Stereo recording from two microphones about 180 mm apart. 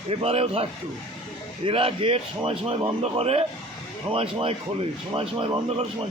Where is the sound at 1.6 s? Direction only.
30° right (ahead or behind).